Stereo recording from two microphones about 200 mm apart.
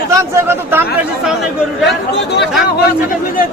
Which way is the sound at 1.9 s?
55° left (ahead or behind).